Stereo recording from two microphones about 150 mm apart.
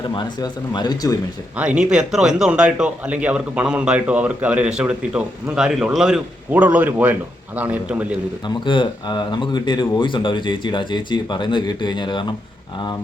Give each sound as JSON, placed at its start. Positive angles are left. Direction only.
{"t": 0.1, "sound": "speech", "side_deg": 30}
{"t": 1.5, "sound": "a man's voice", "side_deg": -10}
{"t": 8.4, "sound": "speech", "side_deg": 30}